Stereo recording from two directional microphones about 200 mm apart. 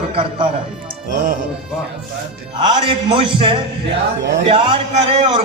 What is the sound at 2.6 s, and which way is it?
A man's voice, 25° right (ahead or behind).